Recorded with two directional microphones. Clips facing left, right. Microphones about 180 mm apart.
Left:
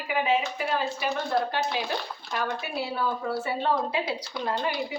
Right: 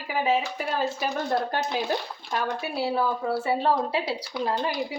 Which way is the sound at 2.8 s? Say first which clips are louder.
Right 4 dB; 30° right (ahead or behind).